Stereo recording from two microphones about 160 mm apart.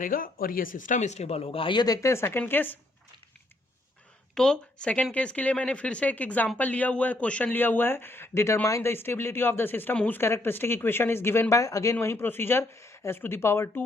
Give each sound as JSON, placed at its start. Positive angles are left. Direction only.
{"t": 0.0, "sound": "speech", "side_deg": 60}
{"t": 4.4, "sound": "speech", "side_deg": 5}